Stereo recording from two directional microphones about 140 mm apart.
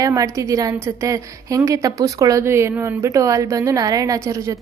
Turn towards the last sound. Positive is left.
turn(degrees=-20)  # may be behind; listen again after turning